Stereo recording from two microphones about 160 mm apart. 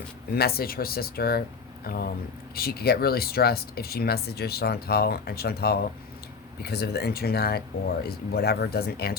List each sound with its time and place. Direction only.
0.3 s speech: 75° left (ahead or behind)